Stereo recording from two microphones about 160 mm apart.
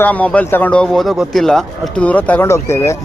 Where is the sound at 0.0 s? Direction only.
10° left (ahead or behind).